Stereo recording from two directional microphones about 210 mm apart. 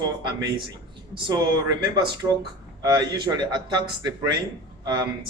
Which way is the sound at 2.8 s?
20° right (ahead or behind).